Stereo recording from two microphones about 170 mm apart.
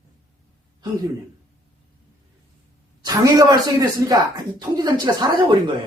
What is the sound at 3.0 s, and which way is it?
Speech, 20° right (ahead or behind).